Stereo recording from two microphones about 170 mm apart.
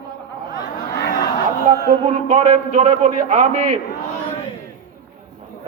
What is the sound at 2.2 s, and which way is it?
A man's voice, 45° right (ahead or behind).